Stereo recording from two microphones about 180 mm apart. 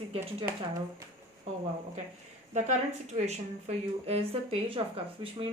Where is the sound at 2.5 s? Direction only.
40° right (ahead or behind).